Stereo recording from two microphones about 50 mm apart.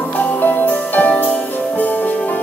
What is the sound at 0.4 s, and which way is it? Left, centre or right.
Music, left.